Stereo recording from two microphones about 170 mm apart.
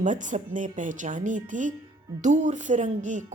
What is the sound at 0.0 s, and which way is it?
Speech, 50° right (ahead or behind).